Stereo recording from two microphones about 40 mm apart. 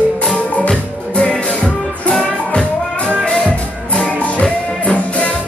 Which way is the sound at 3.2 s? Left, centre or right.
Centre.